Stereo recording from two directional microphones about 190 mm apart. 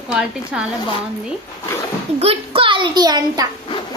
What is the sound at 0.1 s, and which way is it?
Speech, 5° right (ahead or behind).